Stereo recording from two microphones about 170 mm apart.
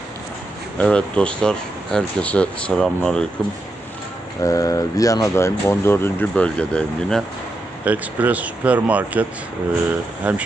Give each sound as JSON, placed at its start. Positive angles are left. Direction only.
{"t": 0.8, "sound": "speech", "side_deg": 5}
{"t": 4.4, "sound": "speech", "side_deg": 20}
{"t": 7.9, "sound": "speech", "side_deg": -10}